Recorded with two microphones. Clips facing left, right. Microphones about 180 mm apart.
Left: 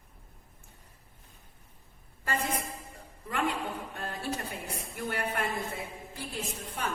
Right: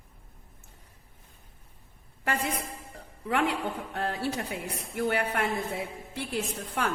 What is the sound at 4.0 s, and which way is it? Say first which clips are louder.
A woman's voice: right 6 dB; 70° right (ahead or behind).